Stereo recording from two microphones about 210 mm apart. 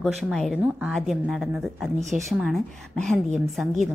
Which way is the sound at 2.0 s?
35° right (ahead or behind).